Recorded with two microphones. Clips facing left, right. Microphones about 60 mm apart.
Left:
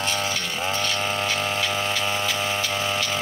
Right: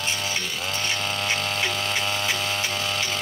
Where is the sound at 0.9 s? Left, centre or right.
Centre.